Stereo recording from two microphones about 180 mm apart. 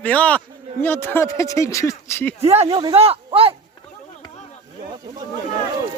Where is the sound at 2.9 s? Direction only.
30° right (ahead or behind).